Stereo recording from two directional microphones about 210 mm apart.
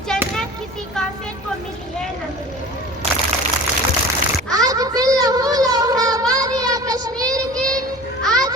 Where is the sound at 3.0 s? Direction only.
30° right (ahead or behind).